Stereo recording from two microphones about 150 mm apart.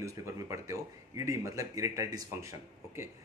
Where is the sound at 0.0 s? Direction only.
20° right (ahead or behind).